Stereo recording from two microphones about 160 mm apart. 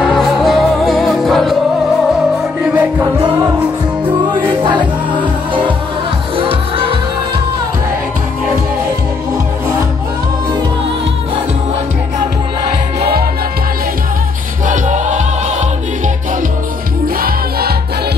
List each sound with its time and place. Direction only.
0.0 s music: centre (ahead or behind)
4.3 s music: 30° right (ahead or behind)
14.7 s music: 50° right (ahead or behind)
17.2 s music: 75° right (ahead or behind)